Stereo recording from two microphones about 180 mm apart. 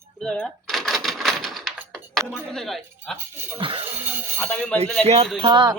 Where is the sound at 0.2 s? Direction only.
5° left (ahead or behind).